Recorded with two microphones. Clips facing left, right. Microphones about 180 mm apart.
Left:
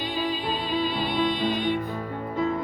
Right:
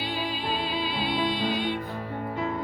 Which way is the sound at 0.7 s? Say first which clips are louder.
Left 3 dB; 50° left (ahead or behind).